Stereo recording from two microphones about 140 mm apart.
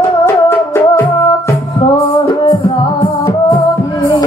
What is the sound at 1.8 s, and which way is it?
Music, 30° left (ahead or behind).